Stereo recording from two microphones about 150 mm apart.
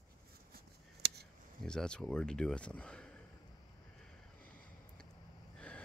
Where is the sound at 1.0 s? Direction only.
90° right.